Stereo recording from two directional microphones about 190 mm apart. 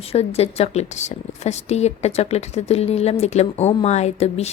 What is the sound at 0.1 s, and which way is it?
A woman's voice, 35° left (ahead or behind).